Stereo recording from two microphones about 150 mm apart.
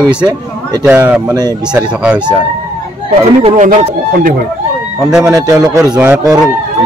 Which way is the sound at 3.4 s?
40° right (ahead or behind).